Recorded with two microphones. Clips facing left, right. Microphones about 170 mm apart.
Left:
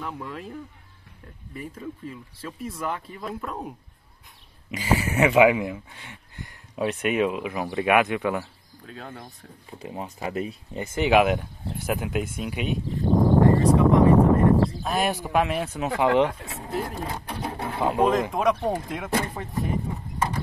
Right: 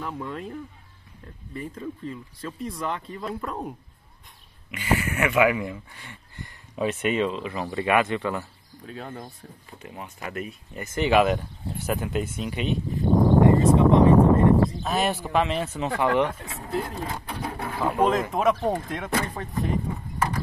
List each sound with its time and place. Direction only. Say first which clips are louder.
0.0 s speech: right 2 dB; centre (ahead or behind)
4.6 s speech: left 1 dB; 35° left (ahead or behind)
5.4 s speech: left 2 dB; 15° left (ahead or behind)
6.5 s a sound: even; centre (ahead or behind)
7.2 s speech: left 2 dB; 15° left (ahead or behind)
8.8 s speech: right 3 dB; 5° right (ahead or behind)
9.8 s speech: left 5 dB; 35° left (ahead or behind)
11.0 s speech: left 1 dB; 15° left (ahead or behind)
12.9 s speech: even; 20° right (ahead or behind)
14.7 s speech: even; 5° left (ahead or behind)
16.5 s sewing machine: even; 20° left (ahead or behind)
17.9 s speech: even; 5° left (ahead or behind)